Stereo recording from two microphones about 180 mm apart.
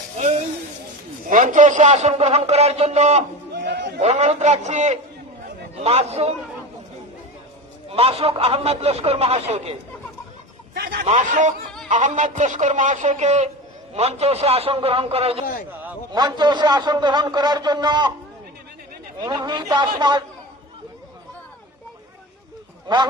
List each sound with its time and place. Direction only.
1.3 s a man's voice: 45° right (ahead or behind)
3.5 s a sound: 65° right (ahead or behind)
4.0 s a man's voice: 40° right (ahead or behind)
7.9 s a man's voice: 35° right (ahead or behind)
10.8 s a man's voice: 55° right (ahead or behind)
11.0 s a man's voice: 40° right (ahead or behind); by 18.1 s 25° right (ahead or behind)
19.2 s a man's voice: 25° right (ahead or behind)